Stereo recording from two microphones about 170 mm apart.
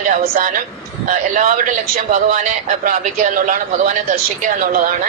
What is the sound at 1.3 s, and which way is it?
A woman's voice, 50° right (ahead or behind).